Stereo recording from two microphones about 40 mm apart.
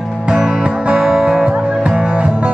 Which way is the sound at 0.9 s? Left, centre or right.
Centre.